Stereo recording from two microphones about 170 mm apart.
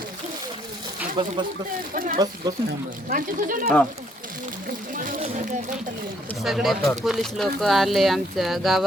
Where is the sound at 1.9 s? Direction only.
55° right (ahead or behind).